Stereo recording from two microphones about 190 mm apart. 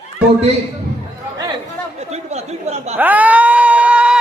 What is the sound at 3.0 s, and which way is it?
Screaming, 10° right (ahead or behind).